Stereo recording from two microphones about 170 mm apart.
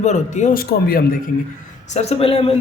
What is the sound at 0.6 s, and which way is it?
Speech, 65° left (ahead or behind).